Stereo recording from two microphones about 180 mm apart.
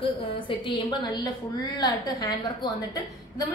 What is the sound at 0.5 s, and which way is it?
A woman's voice, 25° left (ahead or behind).